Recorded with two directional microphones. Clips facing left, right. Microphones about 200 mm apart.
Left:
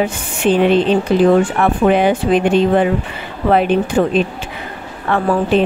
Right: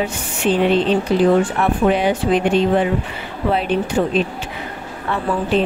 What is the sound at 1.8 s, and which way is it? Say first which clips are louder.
Speech: left 4 dB; 55° left (ahead or behind).